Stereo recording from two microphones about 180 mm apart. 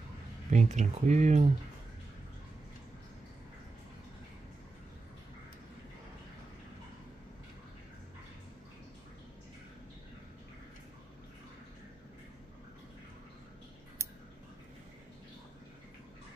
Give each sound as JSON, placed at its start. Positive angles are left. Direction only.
{"t": 0.5, "sound": "speech", "side_deg": -40}